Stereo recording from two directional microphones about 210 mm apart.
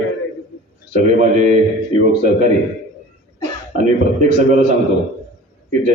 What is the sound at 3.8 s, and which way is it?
Speech, 35° right (ahead or behind).